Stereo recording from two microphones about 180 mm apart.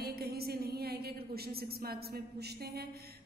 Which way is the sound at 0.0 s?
60° right (ahead or behind).